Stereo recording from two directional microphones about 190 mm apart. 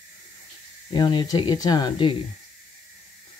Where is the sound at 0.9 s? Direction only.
25° left (ahead or behind).